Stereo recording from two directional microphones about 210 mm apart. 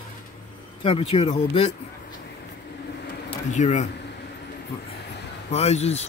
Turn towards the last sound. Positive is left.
turn(degrees=30)  # may be behind; listen again after turning